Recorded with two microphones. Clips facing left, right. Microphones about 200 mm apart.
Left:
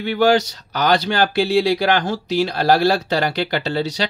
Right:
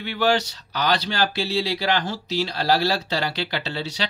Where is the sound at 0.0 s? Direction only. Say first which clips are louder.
Left 6 dB; 45° left (ahead or behind).